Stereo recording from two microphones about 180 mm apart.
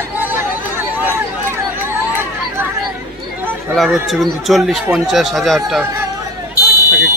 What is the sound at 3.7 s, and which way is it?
Speech, centre (ahead or behind).